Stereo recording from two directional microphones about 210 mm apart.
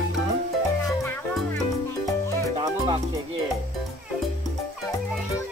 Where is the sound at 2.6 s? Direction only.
25° right (ahead or behind).